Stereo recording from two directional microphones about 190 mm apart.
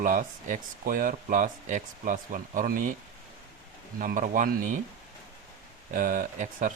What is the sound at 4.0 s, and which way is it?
Speech, 45° right (ahead or behind).